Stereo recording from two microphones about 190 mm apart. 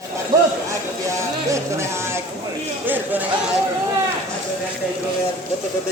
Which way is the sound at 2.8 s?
10° right (ahead or behind).